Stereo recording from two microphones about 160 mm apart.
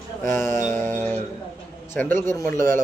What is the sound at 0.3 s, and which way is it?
Mantra, 15° left (ahead or behind).